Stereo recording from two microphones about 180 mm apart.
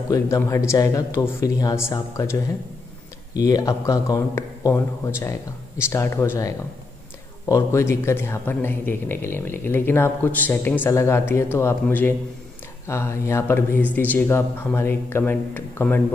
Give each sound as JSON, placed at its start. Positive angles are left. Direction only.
{"t": 0.1, "sound": "speech", "side_deg": 15}